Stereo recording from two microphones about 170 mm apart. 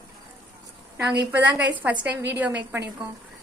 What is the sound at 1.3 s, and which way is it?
Speech, 10° right (ahead or behind).